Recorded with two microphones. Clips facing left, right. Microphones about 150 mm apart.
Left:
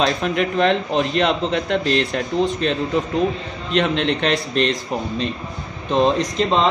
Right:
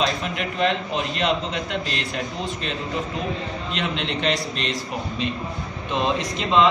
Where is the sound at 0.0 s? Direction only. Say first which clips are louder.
Left 5 dB; 50° left (ahead or behind).